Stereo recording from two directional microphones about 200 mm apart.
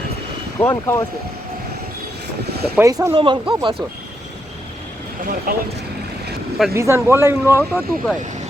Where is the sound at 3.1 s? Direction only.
25° right (ahead or behind).